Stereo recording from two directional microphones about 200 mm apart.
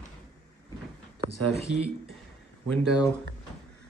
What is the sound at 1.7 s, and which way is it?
Speech, 60° left (ahead or behind).